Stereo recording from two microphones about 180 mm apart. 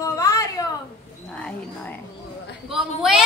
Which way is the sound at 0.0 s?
15° left (ahead or behind).